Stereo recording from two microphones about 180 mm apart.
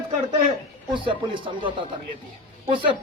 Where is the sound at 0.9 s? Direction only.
25° right (ahead or behind).